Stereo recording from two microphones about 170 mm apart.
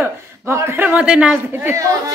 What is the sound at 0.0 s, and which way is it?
A man's voice, 15° right (ahead or behind).